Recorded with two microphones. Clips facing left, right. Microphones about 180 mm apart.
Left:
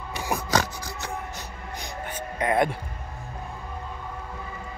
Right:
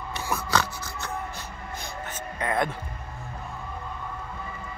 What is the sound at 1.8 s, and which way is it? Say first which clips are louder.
Music: left 4 dB; 15° left (ahead or behind).